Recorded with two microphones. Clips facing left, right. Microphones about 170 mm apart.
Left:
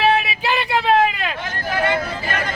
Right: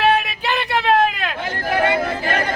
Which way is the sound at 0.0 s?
Centre (ahead or behind).